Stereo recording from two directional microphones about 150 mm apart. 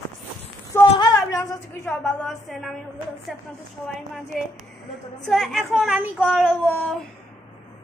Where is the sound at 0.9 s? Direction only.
25° left (ahead or behind).